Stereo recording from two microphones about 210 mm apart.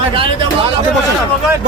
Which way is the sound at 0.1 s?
25° right (ahead or behind).